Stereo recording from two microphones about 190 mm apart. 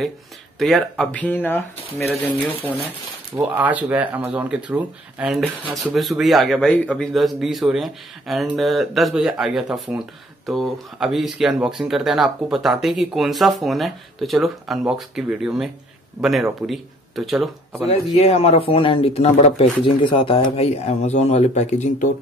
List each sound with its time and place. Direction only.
0.6 s speech: centre (ahead or behind)
3.3 s speech: 10° right (ahead or behind)
17.8 s speech: 35° left (ahead or behind)